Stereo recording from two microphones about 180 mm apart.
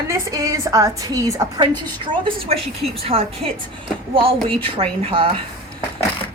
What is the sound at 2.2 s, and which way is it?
A woman's voice, 35° right (ahead or behind).